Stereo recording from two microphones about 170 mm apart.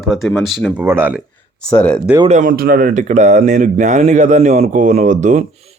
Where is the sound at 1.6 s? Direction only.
5° left (ahead or behind).